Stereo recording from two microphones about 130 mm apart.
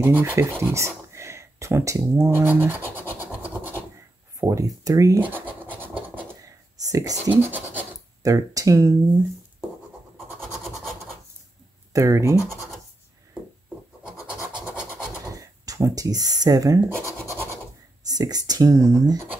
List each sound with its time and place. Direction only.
0.0 s speech: 20° right (ahead or behind)
4.4 s speech: 25° right (ahead or behind)
5.2 s scratch: 15° right (ahead or behind)
6.4 s a sound: 25° right (ahead or behind)
7.2 s speech: 15° right (ahead or behind)
8.2 s speech: 25° right (ahead or behind)
10.1 s a sound: centre (ahead or behind)
11.9 s speech: 25° right (ahead or behind)
12.4 s speech: 20° left (ahead or behind)
15.2 s a sound: 25° right (ahead or behind)
16.3 s speech: 30° right (ahead or behind)
18.0 s speech: 30° right (ahead or behind)